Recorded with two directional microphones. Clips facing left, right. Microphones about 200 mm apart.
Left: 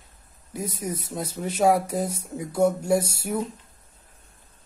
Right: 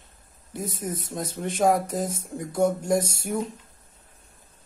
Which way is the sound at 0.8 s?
10° left (ahead or behind).